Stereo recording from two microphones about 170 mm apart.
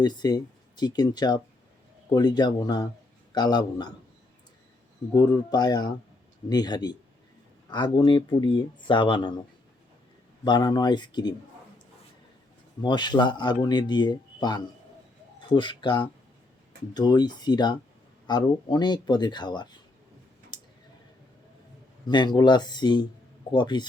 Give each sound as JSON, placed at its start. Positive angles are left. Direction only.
{"t": 0.0, "sound": "speech", "side_deg": 25}
{"t": 5.1, "sound": "speech", "side_deg": 20}
{"t": 10.4, "sound": "speech", "side_deg": 25}
{"t": 12.8, "sound": "speech", "side_deg": 25}
{"t": 20.5, "sound": "tick-tock", "side_deg": 25}
{"t": 22.0, "sound": "speech", "side_deg": 25}